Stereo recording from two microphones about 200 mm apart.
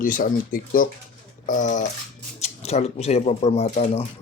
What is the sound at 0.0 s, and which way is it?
Speech, 45° left (ahead or behind).